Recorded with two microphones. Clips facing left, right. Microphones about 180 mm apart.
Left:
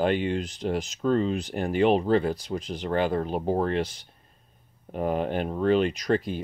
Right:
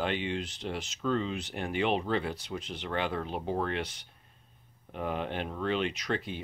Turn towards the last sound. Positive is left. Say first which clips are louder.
# left 8 dB
turn(degrees=40)  # may be behind; listen again after turning